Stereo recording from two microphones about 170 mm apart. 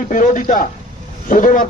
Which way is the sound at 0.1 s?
50° left (ahead or behind).